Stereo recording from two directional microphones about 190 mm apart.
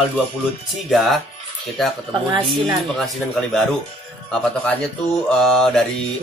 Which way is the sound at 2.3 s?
20° right (ahead or behind).